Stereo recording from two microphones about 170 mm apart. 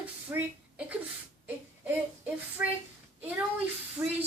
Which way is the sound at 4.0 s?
15° right (ahead or behind).